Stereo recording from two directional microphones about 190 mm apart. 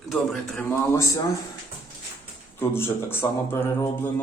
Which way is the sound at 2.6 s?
10° left (ahead or behind).